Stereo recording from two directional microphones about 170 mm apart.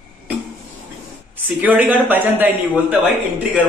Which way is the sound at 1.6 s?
10° right (ahead or behind).